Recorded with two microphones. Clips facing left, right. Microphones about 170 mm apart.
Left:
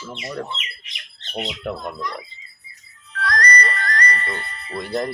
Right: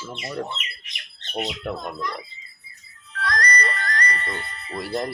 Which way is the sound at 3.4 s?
65° left (ahead or behind).